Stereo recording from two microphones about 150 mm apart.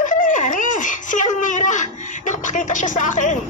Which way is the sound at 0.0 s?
60° left (ahead or behind).